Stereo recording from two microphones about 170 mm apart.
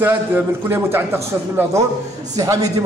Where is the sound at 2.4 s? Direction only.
20° right (ahead or behind).